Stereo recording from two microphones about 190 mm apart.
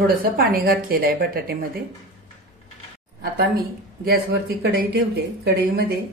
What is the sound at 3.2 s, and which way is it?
A woman's voice, 55° right (ahead or behind).